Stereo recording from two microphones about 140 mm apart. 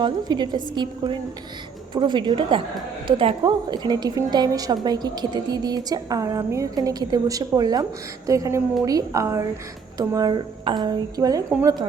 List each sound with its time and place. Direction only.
0.0 s a woman's voice: 30° right (ahead or behind)